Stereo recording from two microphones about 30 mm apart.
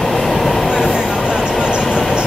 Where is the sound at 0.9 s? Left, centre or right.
Right.